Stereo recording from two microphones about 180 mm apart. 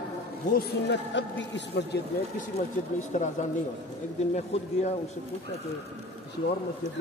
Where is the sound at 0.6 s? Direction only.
75° left (ahead or behind).